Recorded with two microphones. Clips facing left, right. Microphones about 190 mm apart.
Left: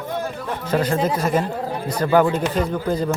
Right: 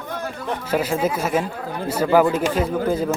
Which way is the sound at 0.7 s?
5° right (ahead or behind).